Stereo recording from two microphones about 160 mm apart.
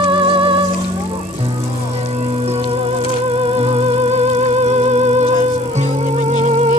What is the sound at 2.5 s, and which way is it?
Music, 40° right (ahead or behind).